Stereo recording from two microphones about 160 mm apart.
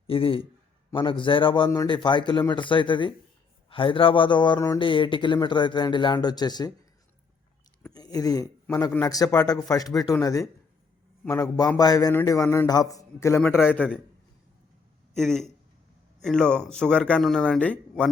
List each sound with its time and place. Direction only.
0.1 s speech: 35° left (ahead or behind)
7.9 s speech: 25° left (ahead or behind)
11.3 s a man's voice: 20° left (ahead or behind)
15.1 s a man's voice: 5° left (ahead or behind)